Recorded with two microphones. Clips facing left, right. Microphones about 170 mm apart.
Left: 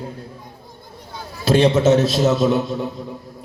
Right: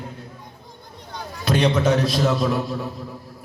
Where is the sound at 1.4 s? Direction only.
30° left (ahead or behind).